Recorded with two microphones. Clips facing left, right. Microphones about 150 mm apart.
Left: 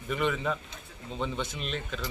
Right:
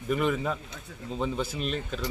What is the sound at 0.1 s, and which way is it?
Speech, 5° right (ahead or behind).